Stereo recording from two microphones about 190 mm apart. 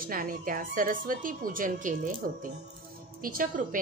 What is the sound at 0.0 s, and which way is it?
A woman's voice, 45° right (ahead or behind).